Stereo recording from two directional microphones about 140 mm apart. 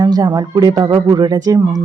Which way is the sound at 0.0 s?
30° right (ahead or behind).